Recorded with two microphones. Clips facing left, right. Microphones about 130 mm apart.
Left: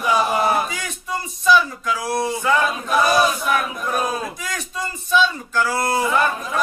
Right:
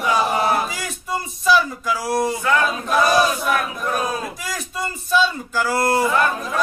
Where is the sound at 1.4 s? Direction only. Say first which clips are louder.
Left 1 dB; 5° right (ahead or behind).